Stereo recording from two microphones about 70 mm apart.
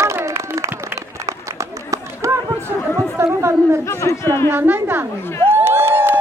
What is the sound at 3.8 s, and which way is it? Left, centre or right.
Speech, left.